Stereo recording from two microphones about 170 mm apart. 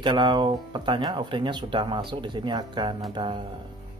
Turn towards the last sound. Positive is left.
turn(degrees=-25)  # may be behind; listen again after turning